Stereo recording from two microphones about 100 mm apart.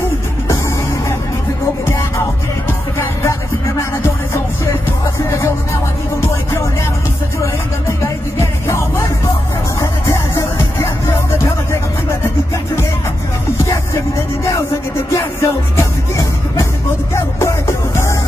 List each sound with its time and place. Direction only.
3.0 s music: 30° left (ahead or behind)
8.4 s music: 30° left (ahead or behind)
10.0 s music: 30° left (ahead or behind)
13.7 s music: 30° left (ahead or behind)